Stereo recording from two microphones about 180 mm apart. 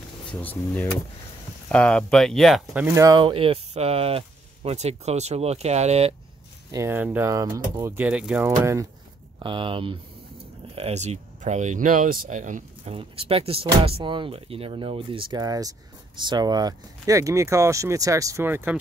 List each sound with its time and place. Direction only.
0.3 s speech: 10° left (ahead or behind)
2.8 s speech: 15° right (ahead or behind); by 6.1 s 35° right (ahead or behind)
6.7 s speech: 15° right (ahead or behind)
8.5 s speech: 15° right (ahead or behind)
9.4 s speech: 30° right (ahead or behind); by 12.9 s 45° right (ahead or behind)
12.9 s speech: 30° right (ahead or behind); by 18.8 s 10° right (ahead or behind)